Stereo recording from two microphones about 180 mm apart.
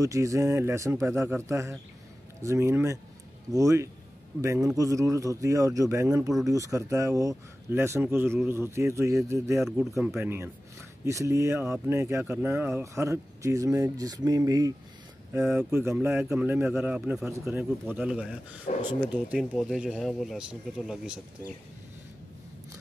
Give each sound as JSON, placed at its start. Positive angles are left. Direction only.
{"t": 0.0, "sound": "speech", "side_deg": -15}
{"t": 19.5, "sound": "speech", "side_deg": 0}